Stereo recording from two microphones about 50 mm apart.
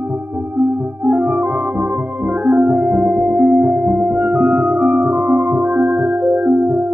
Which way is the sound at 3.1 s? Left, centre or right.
Right.